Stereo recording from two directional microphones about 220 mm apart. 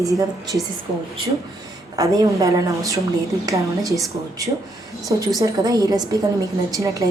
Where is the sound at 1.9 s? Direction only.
15° right (ahead or behind).